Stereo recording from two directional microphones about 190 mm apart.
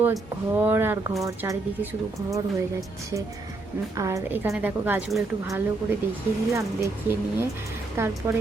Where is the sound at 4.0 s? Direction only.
15° right (ahead or behind).